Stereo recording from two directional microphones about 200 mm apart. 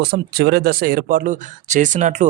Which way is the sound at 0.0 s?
55° right (ahead or behind).